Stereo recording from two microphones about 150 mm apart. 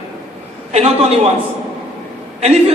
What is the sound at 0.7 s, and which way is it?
Speech, 45° right (ahead or behind).